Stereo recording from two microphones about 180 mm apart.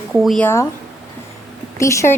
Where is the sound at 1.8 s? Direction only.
15° left (ahead or behind).